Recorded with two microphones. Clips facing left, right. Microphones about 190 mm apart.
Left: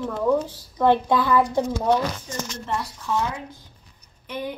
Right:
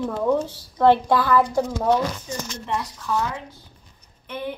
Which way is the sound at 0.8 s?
20° left (ahead or behind).